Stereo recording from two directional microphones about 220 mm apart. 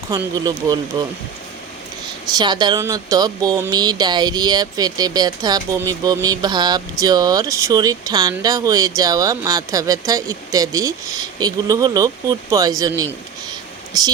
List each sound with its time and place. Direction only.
0.1 s speech: 15° right (ahead or behind)
2.4 s speech: 20° right (ahead or behind)
13.5 s a sound: 15° right (ahead or behind)